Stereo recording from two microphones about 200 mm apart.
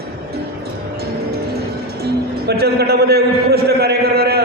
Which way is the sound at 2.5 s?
50° right (ahead or behind).